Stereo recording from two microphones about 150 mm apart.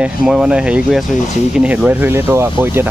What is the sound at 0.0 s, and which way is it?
Rub, 5° right (ahead or behind).